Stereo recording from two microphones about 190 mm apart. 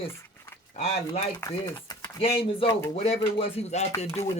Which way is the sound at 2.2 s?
30° left (ahead or behind).